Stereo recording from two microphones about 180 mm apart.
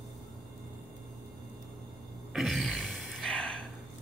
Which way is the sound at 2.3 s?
Centre (ahead or behind).